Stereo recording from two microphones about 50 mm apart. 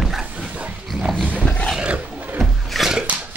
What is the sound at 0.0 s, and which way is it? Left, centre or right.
Dog, centre.